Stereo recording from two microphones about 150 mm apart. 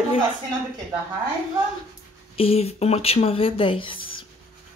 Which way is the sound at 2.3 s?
40° left (ahead or behind).